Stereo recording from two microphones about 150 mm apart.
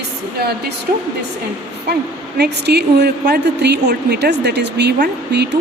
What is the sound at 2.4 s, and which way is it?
A woman's voice, 90° right.